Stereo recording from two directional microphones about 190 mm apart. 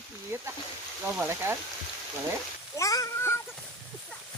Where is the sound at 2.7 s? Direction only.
15° left (ahead or behind).